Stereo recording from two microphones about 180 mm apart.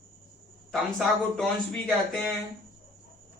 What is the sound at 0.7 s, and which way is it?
A man's voice, centre (ahead or behind).